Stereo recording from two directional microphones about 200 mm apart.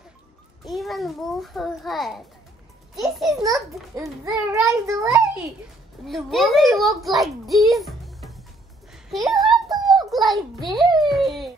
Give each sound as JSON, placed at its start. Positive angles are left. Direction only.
{"t": 0.7, "sound": "a child's voice", "side_deg": 0}
{"t": 4.0, "sound": "a child's voice", "side_deg": -15}
{"t": 6.0, "sound": "a child's voice", "side_deg": 0}
{"t": 9.1, "sound": "a sound", "side_deg": 0}
{"t": 11.0, "sound": "speech", "side_deg": 0}